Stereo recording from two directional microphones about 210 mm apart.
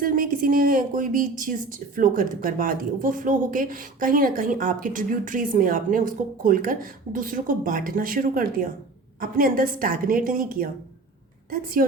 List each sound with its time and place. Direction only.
0.0 s a woman's voice: 40° right (ahead or behind)